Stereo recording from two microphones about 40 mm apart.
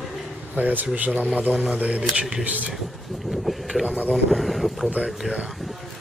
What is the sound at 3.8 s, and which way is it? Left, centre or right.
Speech, right.